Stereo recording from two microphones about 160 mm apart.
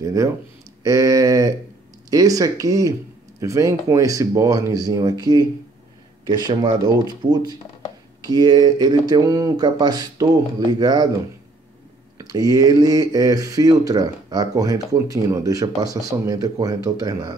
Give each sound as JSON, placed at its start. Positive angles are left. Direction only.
{"t": 0.0, "sound": "speech", "side_deg": -20}
{"t": 12.2, "sound": "speech", "side_deg": -25}